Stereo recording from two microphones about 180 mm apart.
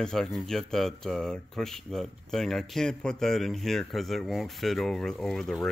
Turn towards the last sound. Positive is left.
turn(degrees=0)  # may be behind; listen again after turning